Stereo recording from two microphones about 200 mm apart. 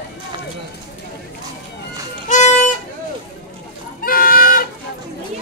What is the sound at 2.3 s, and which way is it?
Music, 35° left (ahead or behind).